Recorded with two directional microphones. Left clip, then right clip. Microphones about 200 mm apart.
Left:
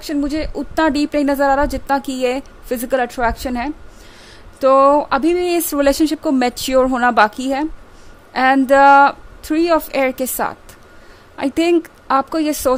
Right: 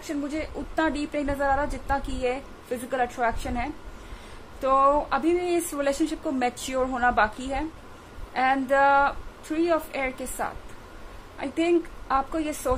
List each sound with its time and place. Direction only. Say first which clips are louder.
0.0 s a woman's voice: left 10 dB; 55° left (ahead or behind)